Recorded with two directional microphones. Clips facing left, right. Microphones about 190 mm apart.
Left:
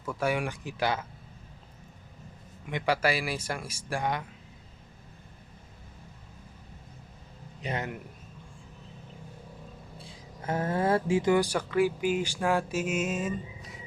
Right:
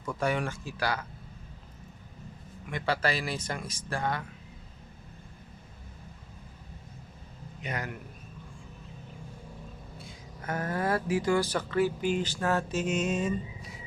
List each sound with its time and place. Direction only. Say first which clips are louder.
0.0 s speech: left 1 dB; 5° left (ahead or behind); by 1.0 s 20° left (ahead or behind)
2.6 s speech: left 2 dB; 15° left (ahead or behind)
7.6 s a man's voice: left 3 dB; 25° left (ahead or behind)
10.0 s speech: left 1 dB; 30° left (ahead or behind); by 13.7 s 5° left (ahead or behind)